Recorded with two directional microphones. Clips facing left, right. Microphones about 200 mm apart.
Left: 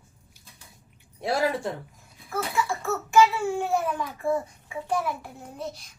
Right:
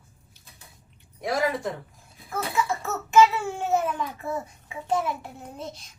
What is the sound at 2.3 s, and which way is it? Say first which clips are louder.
Speech: right 1 dB; 20° right (ahead or behind).